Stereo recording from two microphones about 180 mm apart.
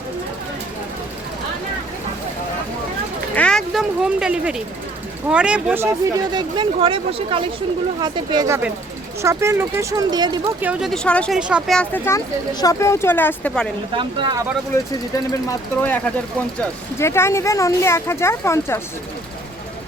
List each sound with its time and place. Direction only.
3.3 s speech: 5° left (ahead or behind); by 10.5 s 25° right (ahead or behind)
10.6 s speech: 5° right (ahead or behind)
11.3 s speech: 5° right (ahead or behind)
12.0 s speech: 20° left (ahead or behind)
13.9 s speech: 25° right (ahead or behind)
15.3 s speech: 15° left (ahead or behind)